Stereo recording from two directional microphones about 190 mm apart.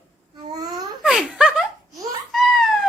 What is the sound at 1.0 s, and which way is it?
Speech, 5° right (ahead or behind).